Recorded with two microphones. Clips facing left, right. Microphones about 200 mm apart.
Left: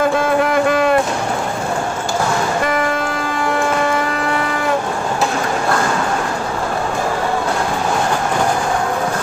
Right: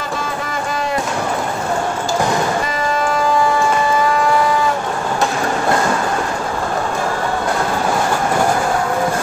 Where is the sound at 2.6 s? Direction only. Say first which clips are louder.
Left 1 dB; 60° left (ahead or behind).